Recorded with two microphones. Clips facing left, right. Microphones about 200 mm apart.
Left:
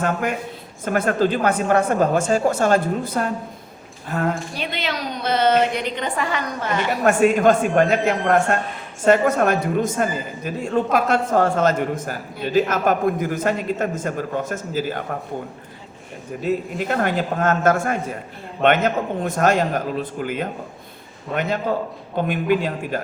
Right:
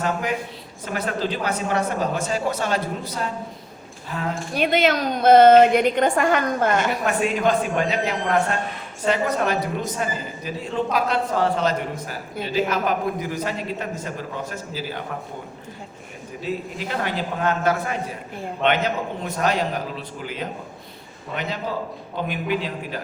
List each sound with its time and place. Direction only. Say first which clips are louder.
0.0 s a man's voice: left 2 dB; 50° left (ahead or behind)
4.5 s a woman's voice: right 7 dB; 50° right (ahead or behind)
7.0 s a man's voice: left 6 dB; 50° left (ahead or behind)
16.4 s a man's voice: left 5 dB; 50° left (ahead or behind)
22.3 s a man's voice: left 6 dB; 50° left (ahead or behind)